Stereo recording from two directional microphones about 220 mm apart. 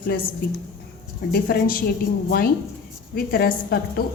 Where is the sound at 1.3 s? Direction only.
40° left (ahead or behind).